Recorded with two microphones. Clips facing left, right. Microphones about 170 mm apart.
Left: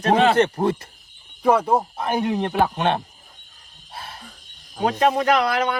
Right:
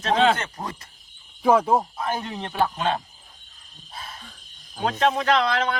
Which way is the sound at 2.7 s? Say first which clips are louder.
Left 4 dB; 65° left (ahead or behind).